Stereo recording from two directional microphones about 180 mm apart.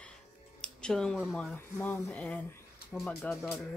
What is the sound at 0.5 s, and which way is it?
Speech, 5° left (ahead or behind).